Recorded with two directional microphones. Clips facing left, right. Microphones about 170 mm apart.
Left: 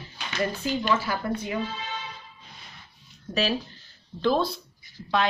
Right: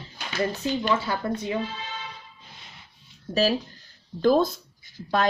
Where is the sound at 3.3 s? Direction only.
35° right (ahead or behind).